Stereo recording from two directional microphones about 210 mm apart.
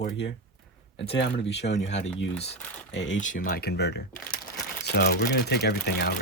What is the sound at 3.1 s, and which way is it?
Speech, 35° left (ahead or behind).